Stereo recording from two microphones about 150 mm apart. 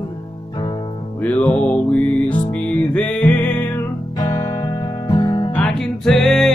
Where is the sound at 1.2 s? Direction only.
10° left (ahead or behind).